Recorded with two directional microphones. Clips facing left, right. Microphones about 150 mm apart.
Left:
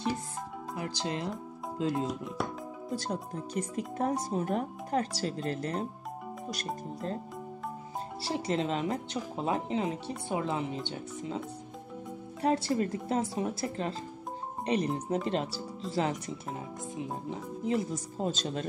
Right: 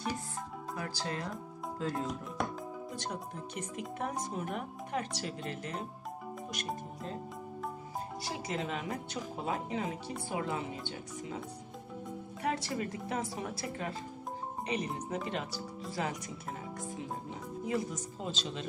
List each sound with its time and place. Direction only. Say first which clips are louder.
0.7 s speech: left 4 dB; 20° left (ahead or behind)
3.0 s speech: left 4 dB; 35° left (ahead or behind)
8.2 s speech: left 8 dB; 30° left (ahead or behind)
12.4 s speech: left 7 dB; 30° left (ahead or behind)
17.6 s speech: left 4 dB; 25° left (ahead or behind)
18.1 s speech: left 9 dB; 45° left (ahead or behind)